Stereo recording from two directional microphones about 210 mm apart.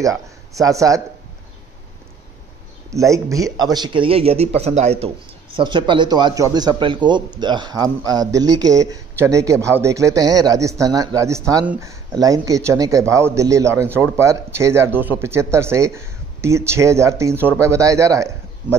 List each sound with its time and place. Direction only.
0.0 s speech: 15° right (ahead or behind)
2.9 s speech: 15° right (ahead or behind)